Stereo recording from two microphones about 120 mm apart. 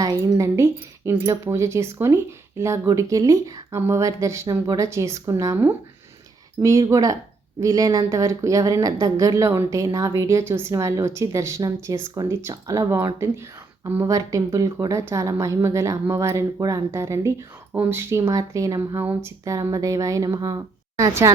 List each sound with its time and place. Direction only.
0.0 s speech: 30° right (ahead or behind)